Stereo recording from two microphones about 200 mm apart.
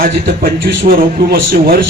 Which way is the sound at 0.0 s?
45° right (ahead or behind).